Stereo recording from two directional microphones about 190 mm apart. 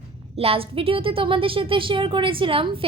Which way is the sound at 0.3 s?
30° right (ahead or behind).